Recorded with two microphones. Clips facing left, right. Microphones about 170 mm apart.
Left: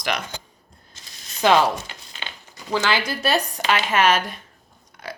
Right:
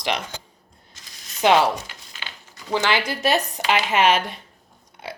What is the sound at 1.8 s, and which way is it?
Crumpling, 25° left (ahead or behind).